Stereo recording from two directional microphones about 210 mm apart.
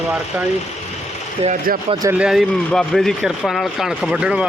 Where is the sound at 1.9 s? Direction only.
20° right (ahead or behind).